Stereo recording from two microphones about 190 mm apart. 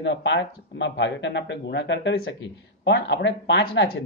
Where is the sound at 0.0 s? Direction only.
65° left (ahead or behind).